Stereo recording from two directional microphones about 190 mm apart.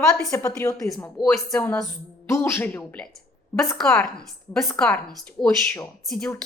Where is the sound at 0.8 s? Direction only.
Centre (ahead or behind).